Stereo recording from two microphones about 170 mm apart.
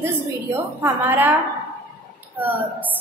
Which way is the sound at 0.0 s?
15° right (ahead or behind).